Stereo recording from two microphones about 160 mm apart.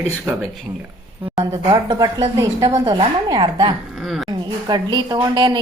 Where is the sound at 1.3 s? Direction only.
25° right (ahead or behind).